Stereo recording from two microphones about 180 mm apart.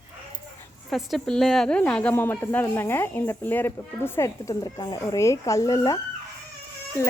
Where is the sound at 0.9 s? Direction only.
Centre (ahead or behind); by 6.0 s 20° left (ahead or behind).